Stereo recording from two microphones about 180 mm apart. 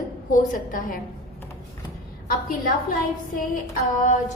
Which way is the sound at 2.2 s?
50° left (ahead or behind).